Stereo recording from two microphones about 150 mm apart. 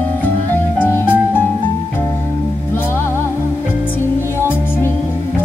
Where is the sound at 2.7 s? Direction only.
15° left (ahead or behind).